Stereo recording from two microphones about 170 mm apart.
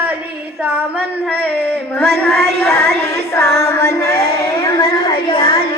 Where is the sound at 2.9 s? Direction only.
75° right (ahead or behind).